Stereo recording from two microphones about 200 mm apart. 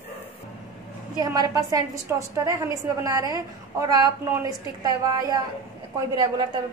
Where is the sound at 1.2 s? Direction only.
20° right (ahead or behind).